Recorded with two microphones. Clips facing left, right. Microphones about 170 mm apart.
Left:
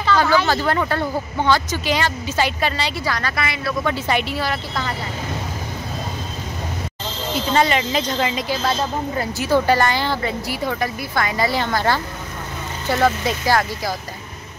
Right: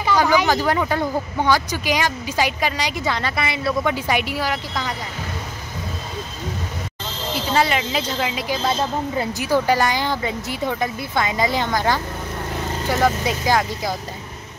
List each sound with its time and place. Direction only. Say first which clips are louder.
0.0 s speech: even; 15° right (ahead or behind)
3.2 s speech: right 1 dB; 25° right (ahead or behind)
3.9 s speech: left 1 dB; 10° right (ahead or behind)
7.3 s speech: left 2 dB; 5° right (ahead or behind)
8.6 s speech: right 2 dB; 15° right (ahead or behind)
13.0 s speech: left 1 dB; 15° right (ahead or behind)